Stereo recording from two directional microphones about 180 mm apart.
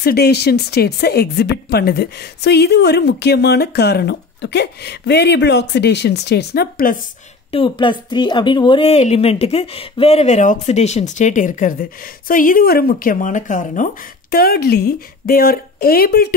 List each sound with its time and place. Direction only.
0.0 s a woman's voice: 60° left (ahead or behind)
7.5 s a woman's voice: 30° left (ahead or behind); by 16.3 s 55° left (ahead or behind)